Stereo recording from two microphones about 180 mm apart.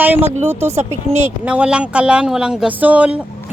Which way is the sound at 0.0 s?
10° right (ahead or behind).